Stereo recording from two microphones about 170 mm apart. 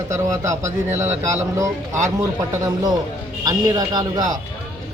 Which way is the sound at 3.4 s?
20° right (ahead or behind).